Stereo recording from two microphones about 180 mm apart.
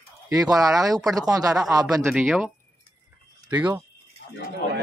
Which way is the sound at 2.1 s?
5° right (ahead or behind).